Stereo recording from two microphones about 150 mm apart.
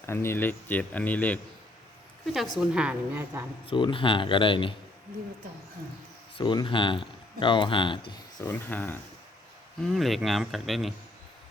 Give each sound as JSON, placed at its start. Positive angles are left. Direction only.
{"t": 0.0, "sound": "speech", "side_deg": 15}
{"t": 2.2, "sound": "a woman's voice", "side_deg": 0}
{"t": 3.7, "sound": "speech", "side_deg": 35}
{"t": 6.3, "sound": "speech", "side_deg": 30}
{"t": 8.4, "sound": "speech", "side_deg": 10}
{"t": 9.8, "sound": "speech", "side_deg": 0}